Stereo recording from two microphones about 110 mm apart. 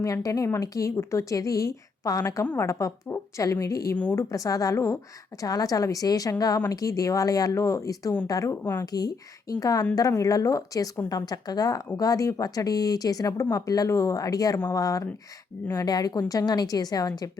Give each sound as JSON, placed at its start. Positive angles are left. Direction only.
{"t": 0.0, "sound": "speech", "side_deg": 30}
{"t": 3.9, "sound": "speech", "side_deg": 20}